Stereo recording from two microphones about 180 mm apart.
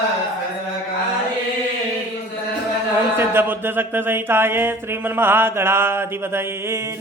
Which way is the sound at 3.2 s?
10° right (ahead or behind).